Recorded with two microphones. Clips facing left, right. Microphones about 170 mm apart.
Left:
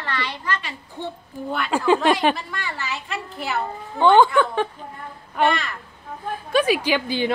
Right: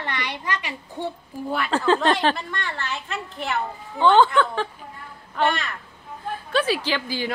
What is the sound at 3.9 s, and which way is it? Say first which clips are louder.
A woman's voice: left 2 dB; 15° left (ahead or behind).